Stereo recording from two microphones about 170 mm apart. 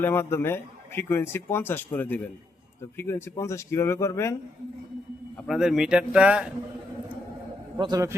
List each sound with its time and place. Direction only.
0.0 s speech: 15° left (ahead or behind)
5.5 s speech: centre (ahead or behind)
7.8 s a man's voice: 20° right (ahead or behind)